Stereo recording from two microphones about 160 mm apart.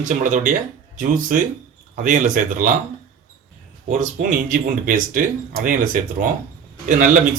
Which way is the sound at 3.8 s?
50° right (ahead or behind).